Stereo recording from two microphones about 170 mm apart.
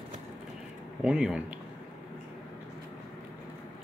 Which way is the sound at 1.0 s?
5° right (ahead or behind).